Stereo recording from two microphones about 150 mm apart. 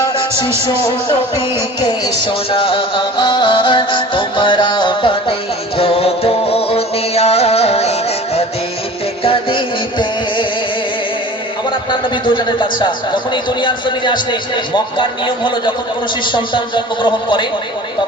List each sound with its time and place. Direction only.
0.7 s a man's voice: 35° left (ahead or behind)
5.7 s music: 40° left (ahead or behind)
11.9 s a man's voice: 30° left (ahead or behind)